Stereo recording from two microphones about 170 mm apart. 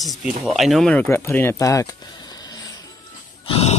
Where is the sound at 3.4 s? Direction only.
35° left (ahead or behind).